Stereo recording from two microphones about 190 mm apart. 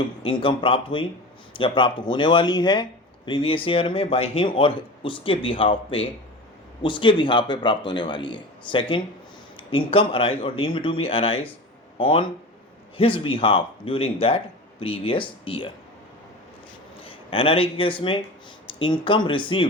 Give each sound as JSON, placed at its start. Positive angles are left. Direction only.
{"t": 0.2, "sound": "speech", "side_deg": 25}
{"t": 17.0, "sound": "speech", "side_deg": 30}